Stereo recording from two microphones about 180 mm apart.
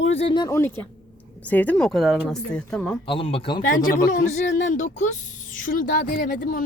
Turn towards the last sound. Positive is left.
turn(degrees=50)  # may be behind; listen again after turning